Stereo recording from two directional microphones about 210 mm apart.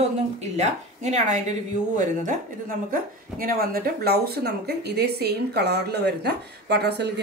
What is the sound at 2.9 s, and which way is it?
Speech, 45° right (ahead or behind).